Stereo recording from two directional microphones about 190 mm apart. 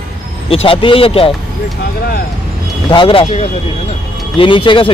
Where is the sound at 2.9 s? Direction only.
30° left (ahead or behind).